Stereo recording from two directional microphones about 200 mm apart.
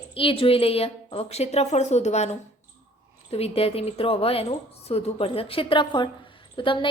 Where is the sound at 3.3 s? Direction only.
30° left (ahead or behind).